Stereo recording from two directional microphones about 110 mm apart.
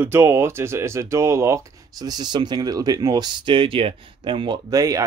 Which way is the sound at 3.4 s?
55° right (ahead or behind).